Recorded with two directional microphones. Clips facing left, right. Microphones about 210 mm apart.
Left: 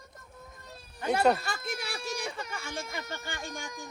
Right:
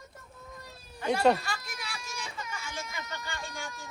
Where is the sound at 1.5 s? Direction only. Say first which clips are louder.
Left 5 dB; 55° left (ahead or behind).